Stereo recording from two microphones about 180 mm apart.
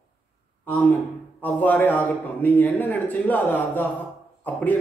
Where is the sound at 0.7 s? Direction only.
10° left (ahead or behind).